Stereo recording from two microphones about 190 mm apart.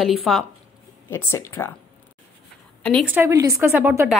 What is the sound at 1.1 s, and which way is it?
Speech, 15° left (ahead or behind).